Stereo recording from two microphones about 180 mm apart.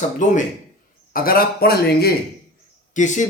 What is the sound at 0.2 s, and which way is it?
Speech, 45° left (ahead or behind).